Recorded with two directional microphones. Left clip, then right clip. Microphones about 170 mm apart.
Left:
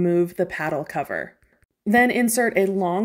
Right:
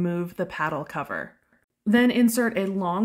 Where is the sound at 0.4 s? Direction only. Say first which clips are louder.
Left 3 dB; 15° left (ahead or behind).